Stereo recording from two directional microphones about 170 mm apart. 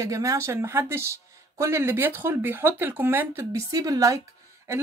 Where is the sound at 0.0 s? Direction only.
20° right (ahead or behind).